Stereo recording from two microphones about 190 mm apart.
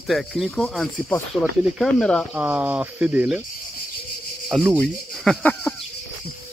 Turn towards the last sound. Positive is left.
turn(degrees=5)  # may be behind; listen again after turning